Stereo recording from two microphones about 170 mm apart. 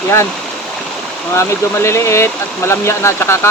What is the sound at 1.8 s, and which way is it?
Speech, 15° left (ahead or behind).